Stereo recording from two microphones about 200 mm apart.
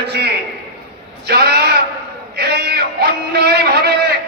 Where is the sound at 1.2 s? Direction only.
55° right (ahead or behind).